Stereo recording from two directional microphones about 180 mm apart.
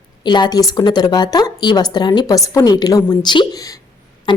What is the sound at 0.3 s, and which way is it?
A woman's voice, 25° left (ahead or behind).